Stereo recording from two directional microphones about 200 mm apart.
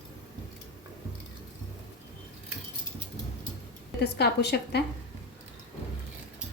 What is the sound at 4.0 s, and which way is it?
Speech, 55° left (ahead or behind).